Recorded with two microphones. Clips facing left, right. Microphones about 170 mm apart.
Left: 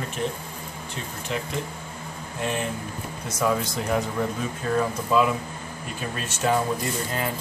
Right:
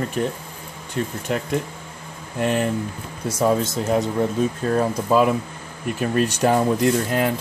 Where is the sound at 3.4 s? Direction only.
30° right (ahead or behind).